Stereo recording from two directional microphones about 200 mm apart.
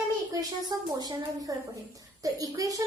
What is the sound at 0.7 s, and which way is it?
A woman's voice, 20° right (ahead or behind).